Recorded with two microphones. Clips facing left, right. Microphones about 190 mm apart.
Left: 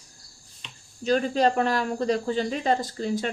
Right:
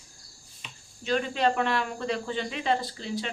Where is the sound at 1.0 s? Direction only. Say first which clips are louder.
Left 4 dB; 40° left (ahead or behind).